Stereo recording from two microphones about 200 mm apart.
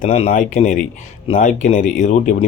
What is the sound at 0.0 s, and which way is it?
Speech, 30° left (ahead or behind).